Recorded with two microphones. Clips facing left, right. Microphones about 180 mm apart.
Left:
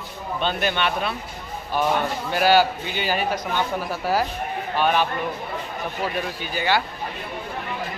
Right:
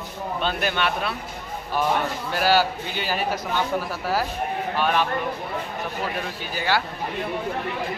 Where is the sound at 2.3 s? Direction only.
Centre (ahead or behind).